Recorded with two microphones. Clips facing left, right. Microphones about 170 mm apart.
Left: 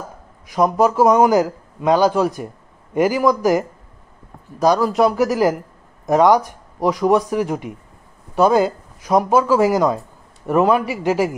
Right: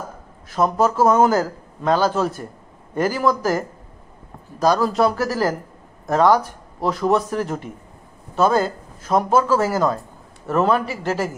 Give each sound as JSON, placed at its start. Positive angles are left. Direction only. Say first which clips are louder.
{"t": 0.5, "sound": "speech", "louder": "left 3 dB", "side_deg": 15}